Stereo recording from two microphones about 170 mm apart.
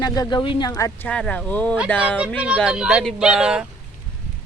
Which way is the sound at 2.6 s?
5° right (ahead or behind).